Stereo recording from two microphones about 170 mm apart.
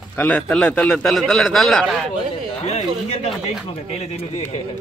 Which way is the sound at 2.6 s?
40° left (ahead or behind).